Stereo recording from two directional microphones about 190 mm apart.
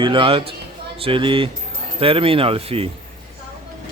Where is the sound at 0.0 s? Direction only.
25° right (ahead or behind).